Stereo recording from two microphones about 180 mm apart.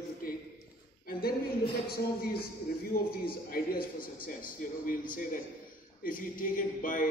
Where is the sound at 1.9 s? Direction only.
55° left (ahead or behind).